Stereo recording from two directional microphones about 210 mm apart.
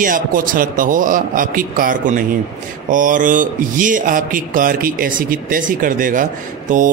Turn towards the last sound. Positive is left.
turn(degrees=-40)  # may be behind; listen again after turning